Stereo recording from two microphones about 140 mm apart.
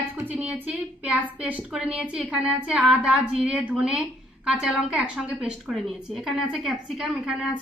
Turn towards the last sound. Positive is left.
turn(degrees=-5)  # may be behind; listen again after turning